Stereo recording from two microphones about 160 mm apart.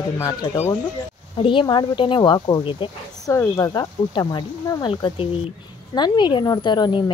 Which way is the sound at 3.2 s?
20° left (ahead or behind).